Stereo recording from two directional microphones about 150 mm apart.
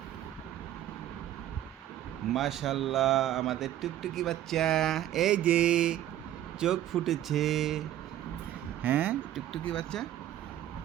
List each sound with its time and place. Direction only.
2.3 s speech: centre (ahead or behind)
8.8 s speech: 10° right (ahead or behind)
9.5 s speech: 5° left (ahead or behind)